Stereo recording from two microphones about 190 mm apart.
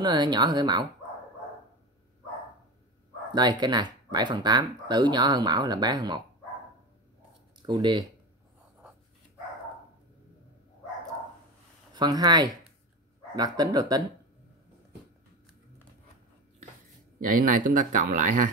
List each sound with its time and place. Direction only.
0.0 s speech: 20° right (ahead or behind)
3.3 s speech: 20° right (ahead or behind)
7.6 s speech: 25° right (ahead or behind)
11.9 s speech: 20° right (ahead or behind)
17.2 s speech: 45° right (ahead or behind)